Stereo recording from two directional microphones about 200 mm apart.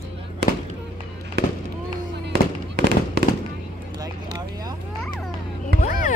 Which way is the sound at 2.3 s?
50° right (ahead or behind).